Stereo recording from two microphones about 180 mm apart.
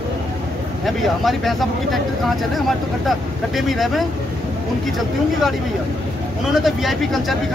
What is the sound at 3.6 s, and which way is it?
Speech, centre (ahead or behind).